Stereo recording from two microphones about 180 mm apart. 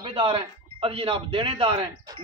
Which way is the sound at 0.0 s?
30° right (ahead or behind).